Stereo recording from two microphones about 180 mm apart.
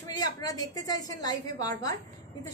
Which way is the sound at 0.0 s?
20° left (ahead or behind).